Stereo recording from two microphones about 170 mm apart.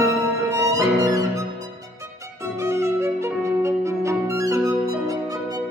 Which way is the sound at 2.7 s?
15° right (ahead or behind).